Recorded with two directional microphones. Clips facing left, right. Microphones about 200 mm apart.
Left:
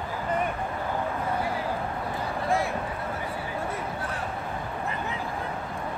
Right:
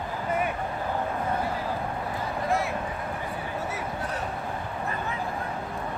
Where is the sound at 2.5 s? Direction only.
Centre (ahead or behind).